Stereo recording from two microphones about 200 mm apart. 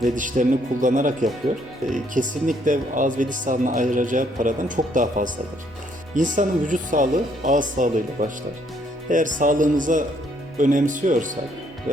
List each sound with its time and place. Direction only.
0.0 s speech: 40° right (ahead or behind)